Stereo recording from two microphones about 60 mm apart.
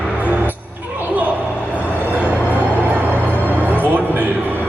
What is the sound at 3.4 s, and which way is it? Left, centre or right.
Music, right.